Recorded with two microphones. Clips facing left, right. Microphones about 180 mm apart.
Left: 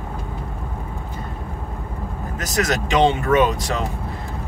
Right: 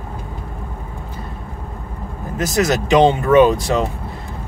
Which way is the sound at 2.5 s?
30° right (ahead or behind).